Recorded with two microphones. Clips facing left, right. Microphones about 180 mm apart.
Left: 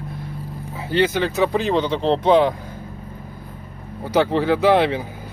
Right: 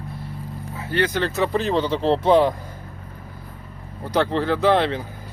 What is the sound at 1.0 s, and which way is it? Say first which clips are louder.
Speech: left 3 dB; 5° left (ahead or behind).